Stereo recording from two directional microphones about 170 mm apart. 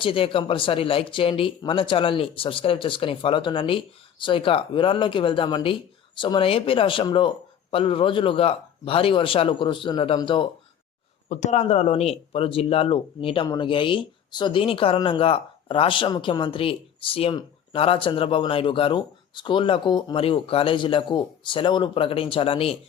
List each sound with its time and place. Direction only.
0.0 s speech: 30° left (ahead or behind)
11.3 s speech: 40° left (ahead or behind)